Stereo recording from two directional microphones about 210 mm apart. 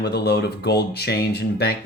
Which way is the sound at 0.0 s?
50° left (ahead or behind).